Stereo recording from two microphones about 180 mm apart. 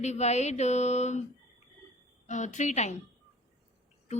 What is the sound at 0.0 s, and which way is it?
Speech, 40° left (ahead or behind).